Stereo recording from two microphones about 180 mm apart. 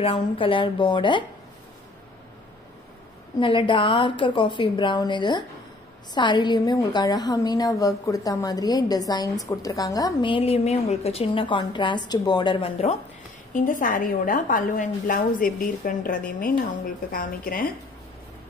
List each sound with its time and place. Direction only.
0.0 s a woman's voice: 30° left (ahead or behind)
3.3 s a woman's voice: 30° left (ahead or behind)
13.6 s a woman's voice: 45° left (ahead or behind)